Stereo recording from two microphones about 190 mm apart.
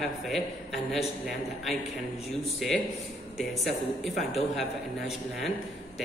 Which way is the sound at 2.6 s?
Centre (ahead or behind).